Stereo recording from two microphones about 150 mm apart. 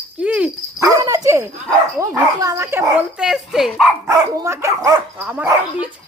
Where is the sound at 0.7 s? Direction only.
20° right (ahead or behind).